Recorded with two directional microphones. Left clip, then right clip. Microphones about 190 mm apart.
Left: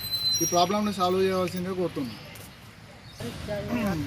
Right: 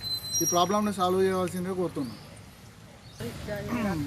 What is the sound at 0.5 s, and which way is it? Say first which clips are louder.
Speech: right 3 dB; 5° right (ahead or behind).